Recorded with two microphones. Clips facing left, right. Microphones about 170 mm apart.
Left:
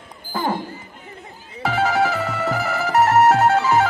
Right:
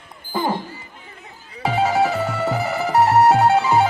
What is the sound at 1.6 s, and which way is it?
Music, 20° right (ahead or behind).